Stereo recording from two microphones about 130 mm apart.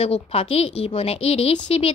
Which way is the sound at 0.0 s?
50° left (ahead or behind).